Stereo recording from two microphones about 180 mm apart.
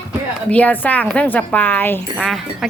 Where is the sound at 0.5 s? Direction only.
10° left (ahead or behind).